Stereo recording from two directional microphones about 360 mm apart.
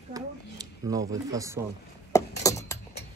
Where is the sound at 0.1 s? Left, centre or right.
Centre.